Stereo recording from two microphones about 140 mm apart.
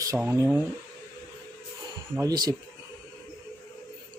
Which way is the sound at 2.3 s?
30° right (ahead or behind).